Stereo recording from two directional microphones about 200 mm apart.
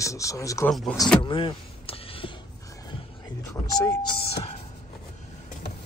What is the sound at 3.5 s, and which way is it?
Speech, 15° left (ahead or behind).